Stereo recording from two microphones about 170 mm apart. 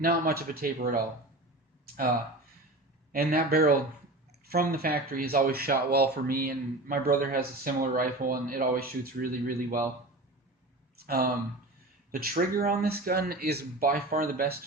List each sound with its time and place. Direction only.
0.0 s speech: 60° right (ahead or behind)
3.1 s speech: 60° right (ahead or behind)
11.0 s speech: 65° right (ahead or behind)